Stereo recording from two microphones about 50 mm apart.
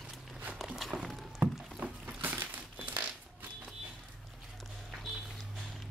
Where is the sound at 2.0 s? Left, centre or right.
Right.